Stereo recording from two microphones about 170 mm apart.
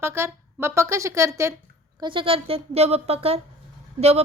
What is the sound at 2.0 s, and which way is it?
Speech, 30° right (ahead or behind).